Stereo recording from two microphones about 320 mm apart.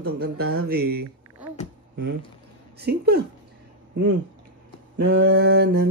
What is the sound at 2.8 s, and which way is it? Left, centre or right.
Mantra, right.